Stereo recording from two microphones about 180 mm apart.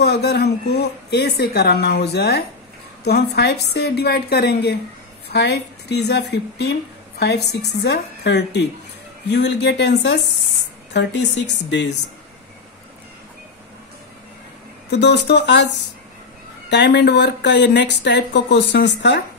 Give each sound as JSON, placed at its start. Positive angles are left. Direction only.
{"t": 0.0, "sound": "a woman's voice", "side_deg": 65}
{"t": 14.9, "sound": "a woman's voice", "side_deg": 70}